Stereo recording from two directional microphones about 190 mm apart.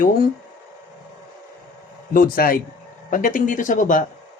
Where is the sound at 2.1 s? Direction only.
50° left (ahead or behind).